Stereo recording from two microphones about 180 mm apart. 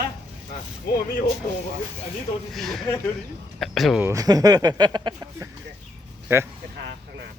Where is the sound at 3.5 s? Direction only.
Centre (ahead or behind).